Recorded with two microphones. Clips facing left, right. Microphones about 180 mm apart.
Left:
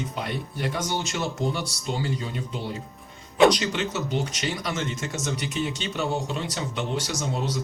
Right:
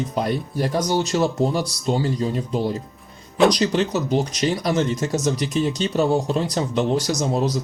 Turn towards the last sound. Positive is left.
turn(degrees=-40)  # may be behind; listen again after turning